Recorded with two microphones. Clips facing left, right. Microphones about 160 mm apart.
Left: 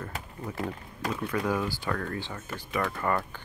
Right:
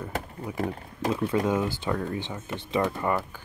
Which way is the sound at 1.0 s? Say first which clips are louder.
Right 4 dB; 25° right (ahead or behind).